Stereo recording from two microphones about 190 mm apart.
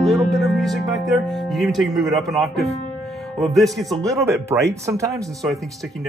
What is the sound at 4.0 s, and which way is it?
Speech, 15° right (ahead or behind).